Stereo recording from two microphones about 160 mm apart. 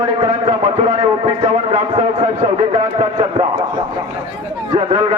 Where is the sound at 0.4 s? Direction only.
45° right (ahead or behind).